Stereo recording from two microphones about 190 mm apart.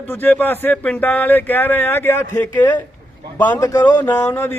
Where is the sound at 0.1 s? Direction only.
10° left (ahead or behind).